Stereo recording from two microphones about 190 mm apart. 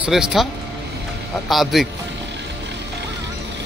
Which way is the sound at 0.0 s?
Centre (ahead or behind).